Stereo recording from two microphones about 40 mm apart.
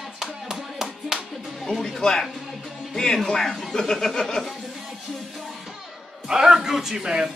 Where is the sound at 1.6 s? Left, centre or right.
Centre.